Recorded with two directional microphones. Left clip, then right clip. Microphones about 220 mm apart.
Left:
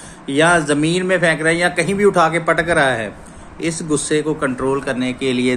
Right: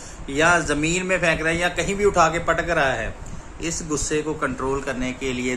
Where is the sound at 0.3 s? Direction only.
20° left (ahead or behind).